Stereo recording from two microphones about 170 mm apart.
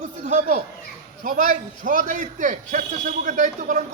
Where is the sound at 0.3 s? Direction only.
45° right (ahead or behind).